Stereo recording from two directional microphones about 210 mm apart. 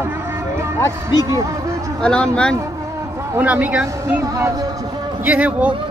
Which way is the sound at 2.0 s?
5° left (ahead or behind).